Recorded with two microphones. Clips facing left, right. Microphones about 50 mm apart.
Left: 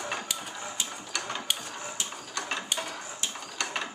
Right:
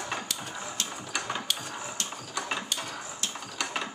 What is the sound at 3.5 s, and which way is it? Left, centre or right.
Cutlery, centre.